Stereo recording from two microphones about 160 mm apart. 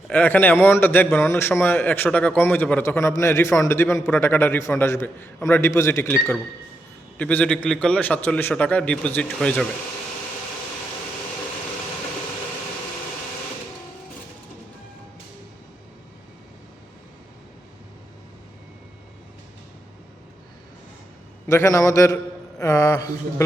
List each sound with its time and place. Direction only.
0.1 s a man's voice: 10° left (ahead or behind)
7.2 s a man's voice: 10° left (ahead or behind)
21.4 s a man's voice: 20° left (ahead or behind)